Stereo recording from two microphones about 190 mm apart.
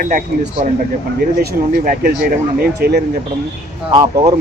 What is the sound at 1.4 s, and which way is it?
Speech, 50° right (ahead or behind).